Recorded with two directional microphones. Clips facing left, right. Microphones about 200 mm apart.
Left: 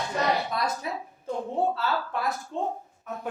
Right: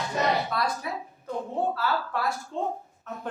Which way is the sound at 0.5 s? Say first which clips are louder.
Even; 25° left (ahead or behind).